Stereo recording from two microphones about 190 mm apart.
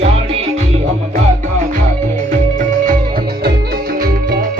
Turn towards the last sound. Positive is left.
turn(degrees=-50)  # may be behind; listen again after turning